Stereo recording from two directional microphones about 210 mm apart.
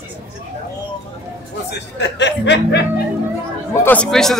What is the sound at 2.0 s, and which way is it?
Speech, 55° left (ahead or behind).